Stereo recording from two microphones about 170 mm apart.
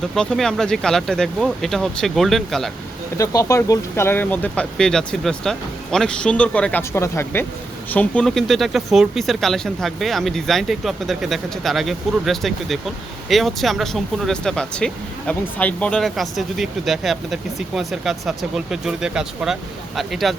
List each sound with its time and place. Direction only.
0.1 s speech: 5° left (ahead or behind)
3.2 s speech: 20° left (ahead or behind); by 20.3 s centre (ahead or behind)